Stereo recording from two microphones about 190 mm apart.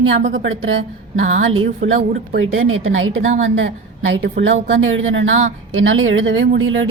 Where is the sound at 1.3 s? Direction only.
90° right.